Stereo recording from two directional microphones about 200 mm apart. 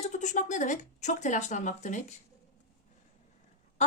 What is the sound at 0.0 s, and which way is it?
Speech, 35° left (ahead or behind).